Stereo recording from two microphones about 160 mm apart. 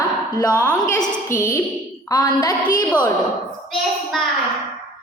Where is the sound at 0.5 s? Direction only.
15° left (ahead or behind).